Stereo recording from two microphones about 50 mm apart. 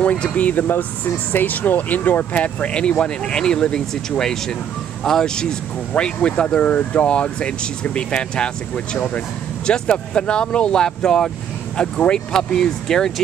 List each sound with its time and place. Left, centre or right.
0.0 s speech: left; by 13.1 s centre